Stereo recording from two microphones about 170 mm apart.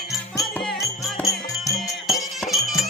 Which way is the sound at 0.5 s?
5° left (ahead or behind).